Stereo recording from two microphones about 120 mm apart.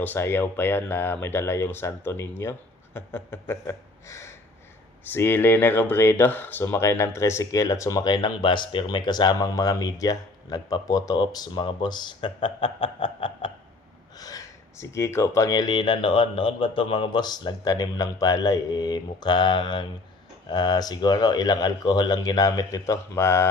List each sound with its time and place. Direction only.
0.0 s speech: 15° left (ahead or behind); by 13.5 s 45° left (ahead or behind)
14.2 s speech: 30° left (ahead or behind)